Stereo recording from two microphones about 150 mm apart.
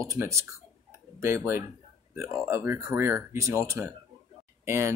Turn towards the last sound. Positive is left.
turn(degrees=-20)  # may be behind; listen again after turning